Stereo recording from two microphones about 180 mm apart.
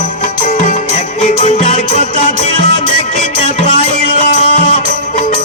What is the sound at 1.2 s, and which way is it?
Music, 40° left (ahead or behind).